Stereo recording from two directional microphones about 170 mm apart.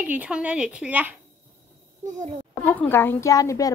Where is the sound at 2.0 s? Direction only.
45° right (ahead or behind).